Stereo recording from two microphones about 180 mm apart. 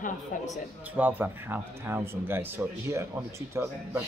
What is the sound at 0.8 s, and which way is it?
Speech, 10° right (ahead or behind).